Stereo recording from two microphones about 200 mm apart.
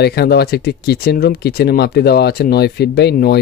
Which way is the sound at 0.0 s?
55° left (ahead or behind).